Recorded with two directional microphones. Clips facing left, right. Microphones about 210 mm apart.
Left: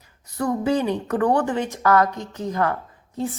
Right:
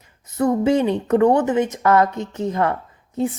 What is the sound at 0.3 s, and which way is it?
A woman's voice, 25° right (ahead or behind).